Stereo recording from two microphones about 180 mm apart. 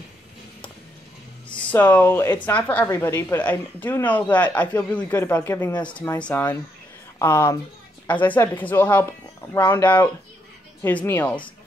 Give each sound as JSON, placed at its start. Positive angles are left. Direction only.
{"t": 1.5, "sound": "a woman's voice", "side_deg": 10}
{"t": 5.9, "sound": "speech", "side_deg": 25}
{"t": 6.2, "sound": "a woman's voice", "side_deg": 10}